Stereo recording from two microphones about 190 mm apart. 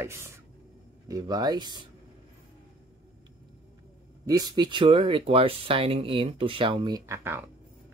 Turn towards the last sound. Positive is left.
turn(degrees=-15)  # may be behind; listen again after turning